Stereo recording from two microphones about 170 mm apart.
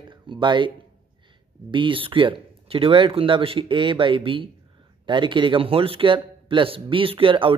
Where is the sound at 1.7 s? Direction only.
30° right (ahead or behind).